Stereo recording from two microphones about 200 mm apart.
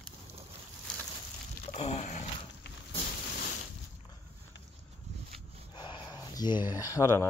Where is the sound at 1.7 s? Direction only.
30° left (ahead or behind).